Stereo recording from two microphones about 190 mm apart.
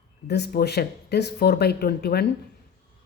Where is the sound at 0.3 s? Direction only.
60° left (ahead or behind).